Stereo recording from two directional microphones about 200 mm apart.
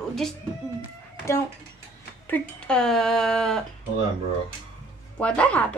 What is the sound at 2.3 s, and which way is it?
Speech, 5° left (ahead or behind).